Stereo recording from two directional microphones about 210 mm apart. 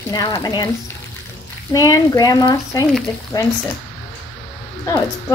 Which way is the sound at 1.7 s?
15° left (ahead or behind).